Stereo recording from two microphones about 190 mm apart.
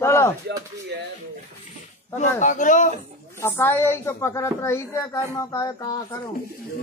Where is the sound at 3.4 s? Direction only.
10° left (ahead or behind).